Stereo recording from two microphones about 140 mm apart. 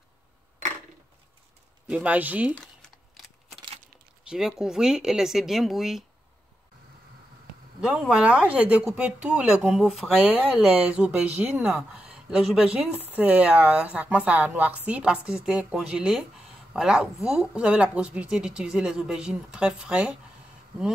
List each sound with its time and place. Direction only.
1.9 s speech: 10° right (ahead or behind)
2.5 s crumpling: 5° left (ahead or behind)
4.3 s speech: 5° right (ahead or behind)
7.8 s speech: 5° right (ahead or behind)